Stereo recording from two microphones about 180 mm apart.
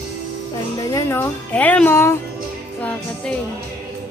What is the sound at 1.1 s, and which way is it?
Speech, 10° left (ahead or behind).